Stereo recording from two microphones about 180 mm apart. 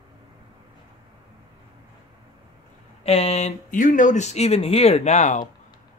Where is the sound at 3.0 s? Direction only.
35° left (ahead or behind).